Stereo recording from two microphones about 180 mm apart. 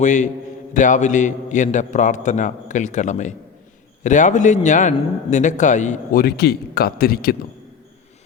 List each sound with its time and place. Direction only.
0.0 s a man's voice: 45° left (ahead or behind)